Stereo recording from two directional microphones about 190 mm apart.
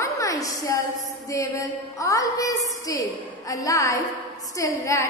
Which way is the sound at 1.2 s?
15° left (ahead or behind).